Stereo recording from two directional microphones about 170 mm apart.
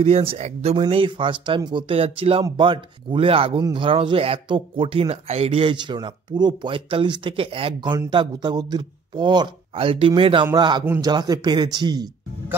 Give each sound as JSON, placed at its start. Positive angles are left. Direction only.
{"t": 0.0, "sound": "speech", "side_deg": -35}